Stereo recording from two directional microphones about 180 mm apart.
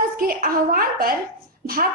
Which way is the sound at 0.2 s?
50° right (ahead or behind).